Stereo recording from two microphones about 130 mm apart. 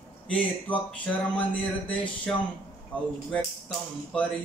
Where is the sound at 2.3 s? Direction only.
5° left (ahead or behind).